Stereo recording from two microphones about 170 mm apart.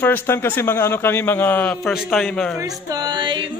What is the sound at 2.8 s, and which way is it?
Music, 20° right (ahead or behind).